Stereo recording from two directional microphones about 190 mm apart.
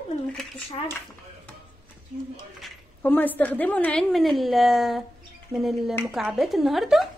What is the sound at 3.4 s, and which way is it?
A woman's voice, 10° left (ahead or behind).